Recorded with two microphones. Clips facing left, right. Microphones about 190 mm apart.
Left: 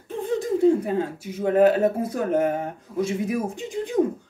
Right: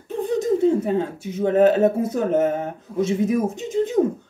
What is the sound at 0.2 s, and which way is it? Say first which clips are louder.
A man's voice: right 1 dB; 20° right (ahead or behind).